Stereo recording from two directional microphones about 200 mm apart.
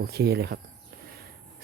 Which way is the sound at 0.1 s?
55° right (ahead or behind).